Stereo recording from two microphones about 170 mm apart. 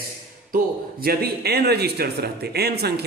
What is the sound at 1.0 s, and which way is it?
Speech, 70° right (ahead or behind).